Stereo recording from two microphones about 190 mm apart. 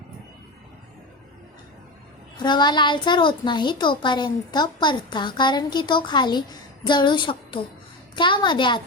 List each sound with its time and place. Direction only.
2.4 s a child's voice: 25° left (ahead or behind)